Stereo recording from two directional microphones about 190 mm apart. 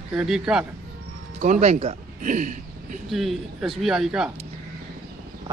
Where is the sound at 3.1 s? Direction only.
Centre (ahead or behind).